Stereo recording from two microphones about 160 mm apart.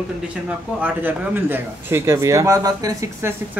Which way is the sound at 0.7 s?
10° right (ahead or behind).